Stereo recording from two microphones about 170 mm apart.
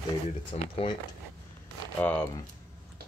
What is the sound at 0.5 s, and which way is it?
Speech, 40° left (ahead or behind).